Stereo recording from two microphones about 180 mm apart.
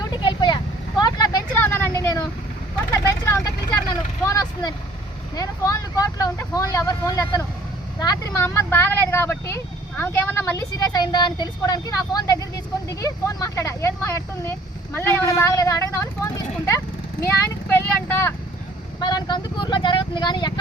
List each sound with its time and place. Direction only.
0.2 s vehicle: 25° left (ahead or behind)
8.4 s speech: 10° left (ahead or behind)
19.0 s speech: 25° left (ahead or behind)